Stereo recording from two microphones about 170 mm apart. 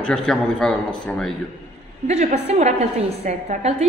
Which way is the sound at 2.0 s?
40° right (ahead or behind).